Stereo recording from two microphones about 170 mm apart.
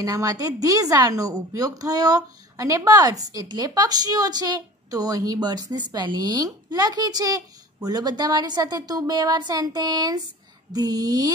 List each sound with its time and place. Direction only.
0.0 s a woman's voice: 20° right (ahead or behind)